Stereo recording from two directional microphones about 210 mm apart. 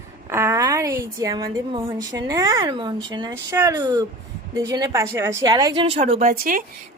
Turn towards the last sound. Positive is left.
turn(degrees=-40)  # may be behind; listen again after turning